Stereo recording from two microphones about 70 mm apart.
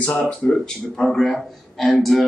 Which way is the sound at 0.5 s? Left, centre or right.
Centre.